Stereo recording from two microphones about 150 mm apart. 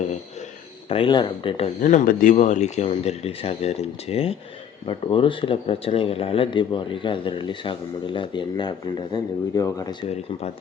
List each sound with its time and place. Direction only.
0.9 s speech: 35° left (ahead or behind)
1.8 s speech: 60° left (ahead or behind); by 9.8 s 25° left (ahead or behind)